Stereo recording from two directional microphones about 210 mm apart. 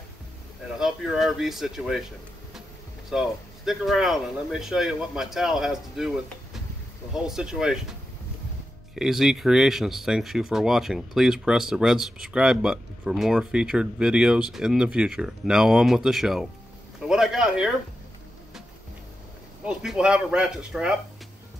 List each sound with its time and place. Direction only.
0.7 s speech: centre (ahead or behind)
3.1 s speech: centre (ahead or behind)
7.2 s speech: centre (ahead or behind)
8.9 s speech: centre (ahead or behind)
17.0 s a sound: centre (ahead or behind)
19.6 s speech: 5° right (ahead or behind)